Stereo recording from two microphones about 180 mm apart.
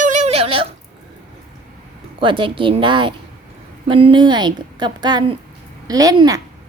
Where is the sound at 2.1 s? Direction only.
30° right (ahead or behind).